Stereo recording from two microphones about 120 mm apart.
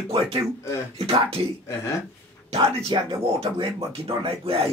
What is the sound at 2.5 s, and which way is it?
Speech, 50° right (ahead or behind).